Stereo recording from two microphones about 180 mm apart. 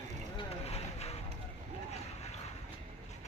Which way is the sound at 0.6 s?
35° left (ahead or behind).